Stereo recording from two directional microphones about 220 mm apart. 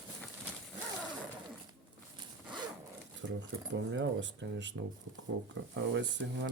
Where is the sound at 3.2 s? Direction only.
60° right (ahead or behind).